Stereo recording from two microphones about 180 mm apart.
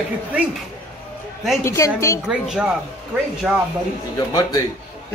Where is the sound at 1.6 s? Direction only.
15° left (ahead or behind).